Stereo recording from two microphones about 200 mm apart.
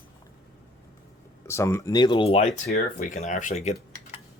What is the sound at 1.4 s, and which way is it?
Speech, 15° left (ahead or behind).